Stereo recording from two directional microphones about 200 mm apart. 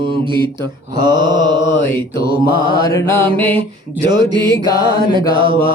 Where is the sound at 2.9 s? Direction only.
15° left (ahead or behind).